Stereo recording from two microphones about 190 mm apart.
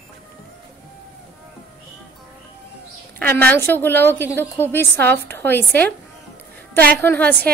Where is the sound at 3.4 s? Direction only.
10° left (ahead or behind).